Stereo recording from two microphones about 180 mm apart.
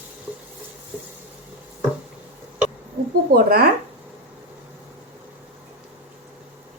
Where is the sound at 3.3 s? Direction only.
55° right (ahead or behind).